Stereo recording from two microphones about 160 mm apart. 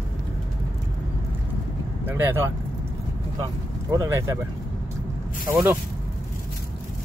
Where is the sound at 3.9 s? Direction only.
20° right (ahead or behind).